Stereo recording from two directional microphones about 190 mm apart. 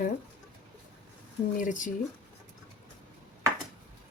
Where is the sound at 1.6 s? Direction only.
40° left (ahead or behind).